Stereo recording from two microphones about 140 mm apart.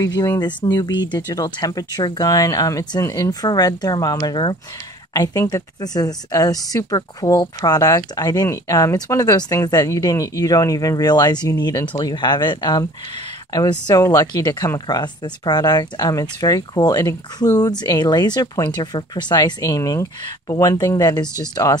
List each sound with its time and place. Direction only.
0.0 s speech: 25° left (ahead or behind)